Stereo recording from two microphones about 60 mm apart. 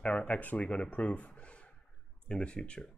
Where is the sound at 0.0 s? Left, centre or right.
Left.